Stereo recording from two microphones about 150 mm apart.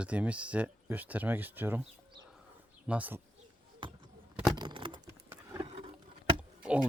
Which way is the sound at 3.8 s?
30° right (ahead or behind).